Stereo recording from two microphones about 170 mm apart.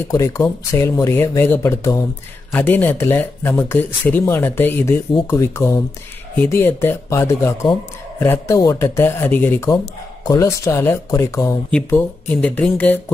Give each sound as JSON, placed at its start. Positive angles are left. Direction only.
{"t": 0.1, "sound": "speech", "side_deg": 20}